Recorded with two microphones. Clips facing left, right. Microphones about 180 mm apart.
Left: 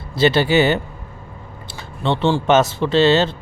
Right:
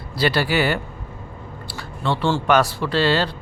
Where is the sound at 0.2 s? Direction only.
25° left (ahead or behind).